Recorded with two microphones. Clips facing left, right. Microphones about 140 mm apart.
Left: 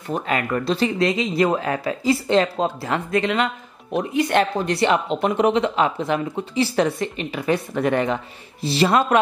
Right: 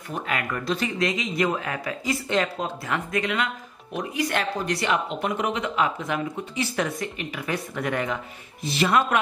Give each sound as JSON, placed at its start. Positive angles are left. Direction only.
{"t": 0.1, "sound": "speech", "side_deg": 35}